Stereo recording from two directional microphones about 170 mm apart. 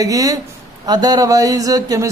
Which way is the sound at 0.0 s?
20° right (ahead or behind).